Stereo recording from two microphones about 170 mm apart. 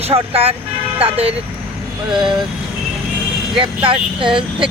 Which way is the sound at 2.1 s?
5° right (ahead or behind).